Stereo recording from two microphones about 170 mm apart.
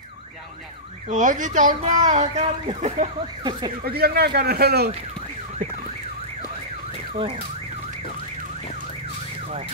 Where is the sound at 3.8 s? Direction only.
65° right (ahead or behind).